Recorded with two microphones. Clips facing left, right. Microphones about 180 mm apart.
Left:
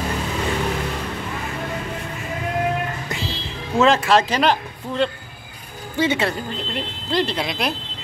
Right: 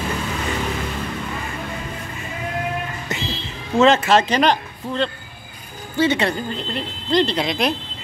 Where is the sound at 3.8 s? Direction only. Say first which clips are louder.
Right 1 dB; centre (ahead or behind).